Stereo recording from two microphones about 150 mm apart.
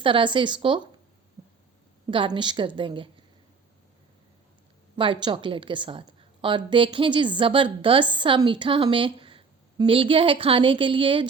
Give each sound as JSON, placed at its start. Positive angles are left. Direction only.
{"t": 0.0, "sound": "a woman's voice", "side_deg": -35}
{"t": 2.0, "sound": "a woman's voice", "side_deg": -35}
{"t": 4.9, "sound": "a woman's voice", "side_deg": -35}